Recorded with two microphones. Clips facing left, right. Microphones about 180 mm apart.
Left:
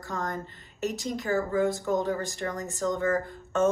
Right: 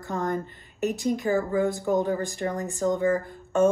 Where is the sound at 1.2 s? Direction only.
15° right (ahead or behind).